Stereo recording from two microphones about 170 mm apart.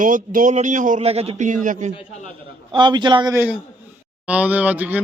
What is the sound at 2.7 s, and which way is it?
Speech, 25° right (ahead or behind).